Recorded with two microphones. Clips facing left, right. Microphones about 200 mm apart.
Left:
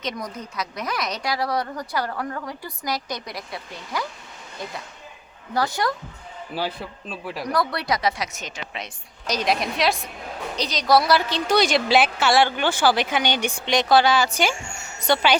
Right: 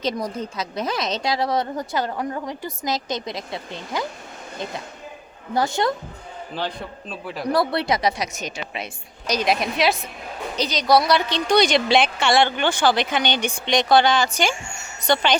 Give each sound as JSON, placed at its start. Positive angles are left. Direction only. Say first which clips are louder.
{"t": 0.0, "sound": "a woman's voice", "louder": "right 6 dB", "side_deg": -30}
{"t": 5.5, "sound": "a woman's voice", "louder": "right 2 dB", "side_deg": -25}
{"t": 6.5, "sound": "a woman's voice", "louder": "left 1 dB", "side_deg": 5}
{"t": 7.4, "sound": "a woman's voice", "louder": "right 4 dB", "side_deg": -30}